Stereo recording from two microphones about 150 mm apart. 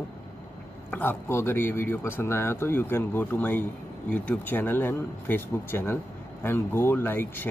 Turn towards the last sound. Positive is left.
turn(degrees=15)  # may be behind; listen again after turning